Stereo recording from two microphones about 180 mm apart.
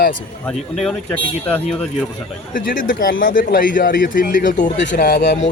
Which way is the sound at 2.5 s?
50° left (ahead or behind).